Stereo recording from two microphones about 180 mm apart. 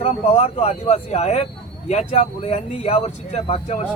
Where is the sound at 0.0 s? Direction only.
35° left (ahead or behind).